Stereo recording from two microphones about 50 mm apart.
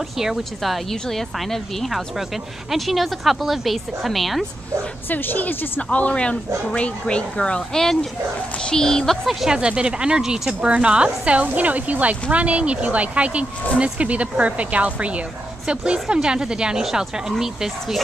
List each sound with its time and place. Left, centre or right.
0.2 s speech: centre
1.1 s a woman's voice: centre
5.1 s a woman's voice: left; by 7.8 s centre
7.8 s speech: centre
9.2 s a woman's voice: centre
9.5 s speech: centre
11.4 s speech: right; by 18.0 s centre